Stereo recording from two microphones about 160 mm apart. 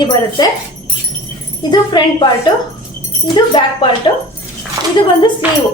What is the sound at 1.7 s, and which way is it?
Speech, 25° left (ahead or behind).